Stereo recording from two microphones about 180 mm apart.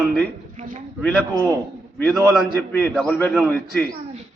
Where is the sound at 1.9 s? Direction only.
5° left (ahead or behind).